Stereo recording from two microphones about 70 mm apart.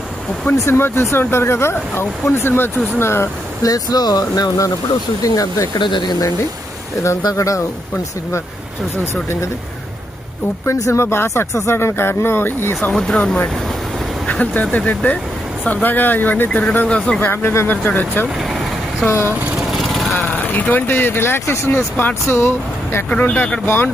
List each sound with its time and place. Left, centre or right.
0.5 s speech: left
3.6 s speech: left
7.2 s speech: left
10.7 s speech: left
12.9 s speech: centre
17.2 s speech: left
17.7 s speech: left
18.3 s vehicle: centre
19.5 s lawn mower: centre
20.1 s speech: left
21.9 s speech: left
23.0 s speech: left